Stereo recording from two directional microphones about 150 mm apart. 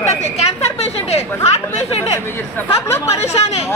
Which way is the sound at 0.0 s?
45° left (ahead or behind).